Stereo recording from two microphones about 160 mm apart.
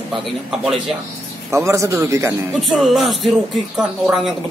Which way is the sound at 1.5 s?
20° right (ahead or behind).